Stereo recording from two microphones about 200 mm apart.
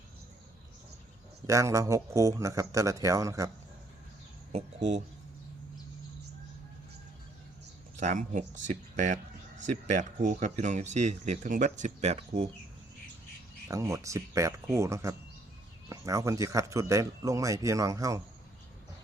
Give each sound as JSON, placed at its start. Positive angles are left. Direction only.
{"t": 1.5, "sound": "speech", "side_deg": -15}
{"t": 4.5, "sound": "speech", "side_deg": -35}
{"t": 7.9, "sound": "speech", "side_deg": -40}
{"t": 13.7, "sound": "speech", "side_deg": -15}